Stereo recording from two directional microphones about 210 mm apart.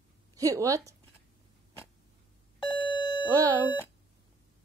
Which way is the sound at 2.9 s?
20° left (ahead or behind).